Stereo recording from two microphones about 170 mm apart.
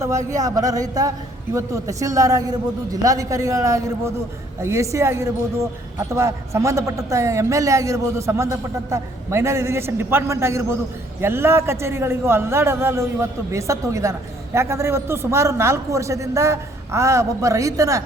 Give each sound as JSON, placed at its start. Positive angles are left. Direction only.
{"t": 0.0, "sound": "a man's voice", "side_deg": -20}